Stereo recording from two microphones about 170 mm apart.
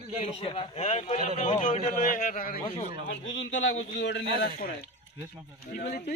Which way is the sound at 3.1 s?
90° left.